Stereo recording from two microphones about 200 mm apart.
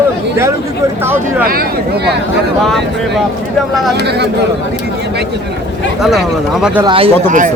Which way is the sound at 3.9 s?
55° right (ahead or behind).